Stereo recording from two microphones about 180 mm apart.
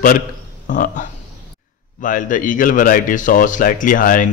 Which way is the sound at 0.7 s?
45° left (ahead or behind).